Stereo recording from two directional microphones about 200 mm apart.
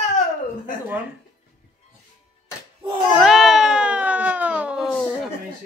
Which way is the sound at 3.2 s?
Centre (ahead or behind).